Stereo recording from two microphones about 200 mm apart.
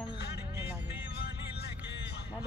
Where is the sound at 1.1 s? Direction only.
55° left (ahead or behind).